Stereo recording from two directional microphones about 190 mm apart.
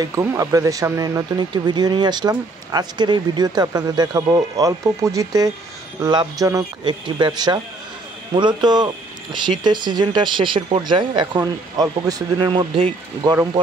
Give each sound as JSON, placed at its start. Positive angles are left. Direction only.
{"t": 0.0, "sound": "speech", "side_deg": -15}